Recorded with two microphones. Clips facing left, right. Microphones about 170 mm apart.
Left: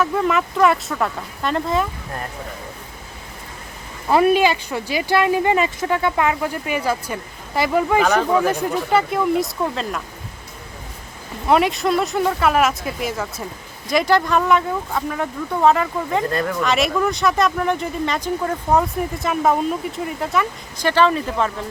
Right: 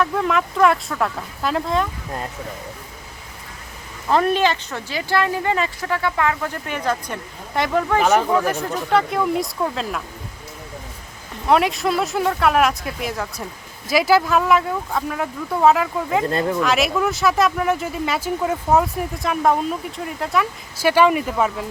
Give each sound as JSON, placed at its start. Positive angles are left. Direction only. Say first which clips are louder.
{"t": 0.0, "sound": "speech", "louder": "left 1 dB", "side_deg": 0}
{"t": 4.1, "sound": "speech", "louder": "left 3 dB", "side_deg": 10}
{"t": 11.4, "sound": "speech", "louder": "left 1 dB", "side_deg": 0}
{"t": 16.3, "sound": "speech", "louder": "right 1 dB", "side_deg": -25}
{"t": 16.6, "sound": "speech", "louder": "even", "side_deg": 0}